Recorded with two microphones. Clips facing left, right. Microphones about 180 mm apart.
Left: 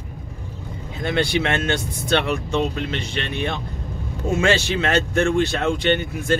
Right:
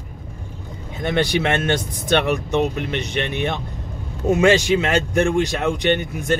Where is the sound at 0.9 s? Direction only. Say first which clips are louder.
Right 1 dB; 20° right (ahead or behind).